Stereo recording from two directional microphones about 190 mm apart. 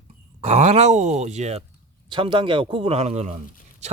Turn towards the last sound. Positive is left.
turn(degrees=-35)  # may be behind; listen again after turning